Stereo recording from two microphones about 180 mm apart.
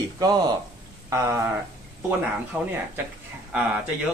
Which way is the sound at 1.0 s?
15° right (ahead or behind).